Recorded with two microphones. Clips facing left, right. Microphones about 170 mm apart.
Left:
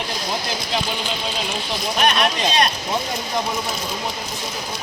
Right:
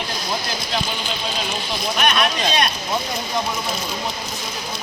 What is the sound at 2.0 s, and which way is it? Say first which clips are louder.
Speech: left 1 dB; 35° left (ahead or behind).